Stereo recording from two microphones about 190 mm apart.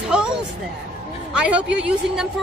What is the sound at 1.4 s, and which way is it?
Speech, 5° right (ahead or behind).